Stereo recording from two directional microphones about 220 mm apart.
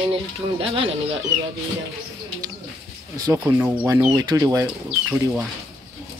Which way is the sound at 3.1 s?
15° right (ahead or behind).